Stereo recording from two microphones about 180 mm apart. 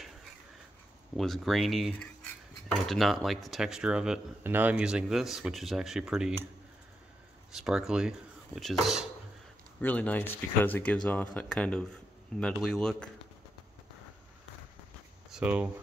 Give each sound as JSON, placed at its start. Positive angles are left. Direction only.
{"t": 1.1, "sound": "speech", "side_deg": 0}
{"t": 7.5, "sound": "speech", "side_deg": -5}
{"t": 15.3, "sound": "speech", "side_deg": -5}